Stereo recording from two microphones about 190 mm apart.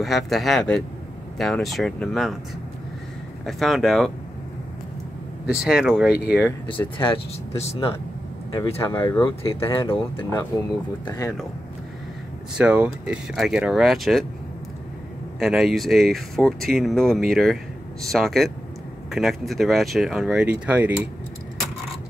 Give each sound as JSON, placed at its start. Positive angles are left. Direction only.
{"t": 0.0, "sound": "speech", "side_deg": 0}
{"t": 3.4, "sound": "speech", "side_deg": 0}
{"t": 5.5, "sound": "speech", "side_deg": -5}
{"t": 7.0, "sound": "speech", "side_deg": 30}
{"t": 8.9, "sound": "speech", "side_deg": 10}
{"t": 9.3, "sound": "speech", "side_deg": 30}
{"t": 11.1, "sound": "speech", "side_deg": 15}
{"t": 12.5, "sound": "speech", "side_deg": -5}
{"t": 15.3, "sound": "speech", "side_deg": 0}